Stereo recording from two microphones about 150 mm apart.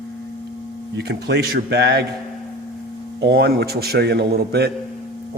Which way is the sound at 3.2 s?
90° right.